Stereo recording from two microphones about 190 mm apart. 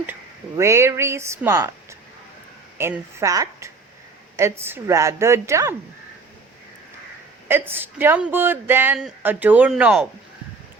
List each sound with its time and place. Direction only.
0.0 s a man's voice: 10° right (ahead or behind)
7.4 s a man's voice: 10° right (ahead or behind)